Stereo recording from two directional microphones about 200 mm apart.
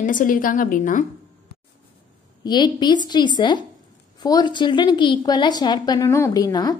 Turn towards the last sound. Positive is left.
turn(degrees=20)  # may be behind; listen again after turning